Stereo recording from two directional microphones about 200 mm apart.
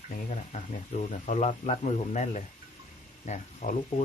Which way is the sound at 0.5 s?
35° left (ahead or behind).